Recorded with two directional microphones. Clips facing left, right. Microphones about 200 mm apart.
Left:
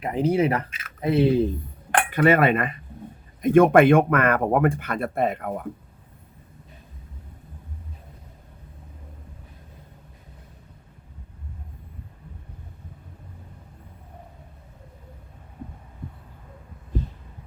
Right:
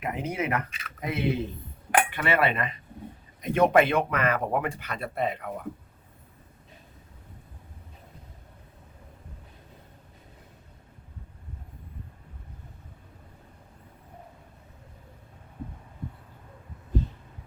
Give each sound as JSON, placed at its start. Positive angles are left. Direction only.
{"t": 0.0, "sound": "speech", "side_deg": 35}
{"t": 2.0, "sound": "speech", "side_deg": 45}